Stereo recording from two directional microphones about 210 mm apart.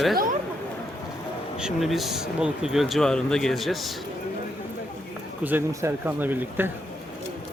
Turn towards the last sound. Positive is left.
turn(degrees=-10)  # may be behind; listen again after turning